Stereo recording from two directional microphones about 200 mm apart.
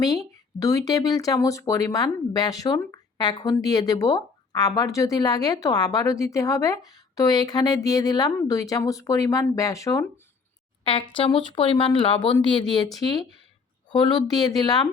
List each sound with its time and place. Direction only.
0.6 s speech: 15° left (ahead or behind)
10.8 s speech: 25° left (ahead or behind)